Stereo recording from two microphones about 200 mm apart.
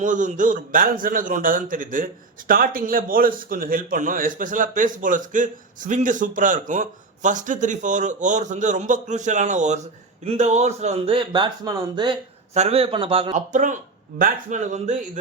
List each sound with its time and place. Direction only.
0.0 s a man's voice: 40° right (ahead or behind)